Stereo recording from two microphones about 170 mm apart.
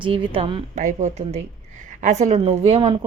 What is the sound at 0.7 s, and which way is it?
A woman's voice, 45° right (ahead or behind).